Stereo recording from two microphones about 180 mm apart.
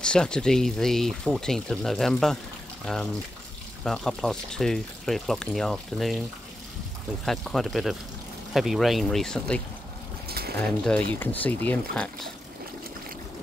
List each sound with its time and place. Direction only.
0.0 s speech: 5° left (ahead or behind)
7.2 s speech: centre (ahead or behind)
10.2 s a sound: 60° right (ahead or behind)
10.9 s speech: 5° left (ahead or behind)